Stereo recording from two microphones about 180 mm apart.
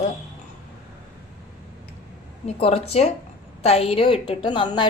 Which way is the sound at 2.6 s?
35° left (ahead or behind).